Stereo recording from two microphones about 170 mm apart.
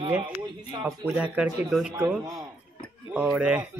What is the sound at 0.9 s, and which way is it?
Speech, 5° right (ahead or behind).